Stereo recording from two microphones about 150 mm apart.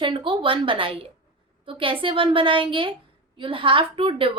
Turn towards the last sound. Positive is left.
turn(degrees=-35)  # may be behind; listen again after turning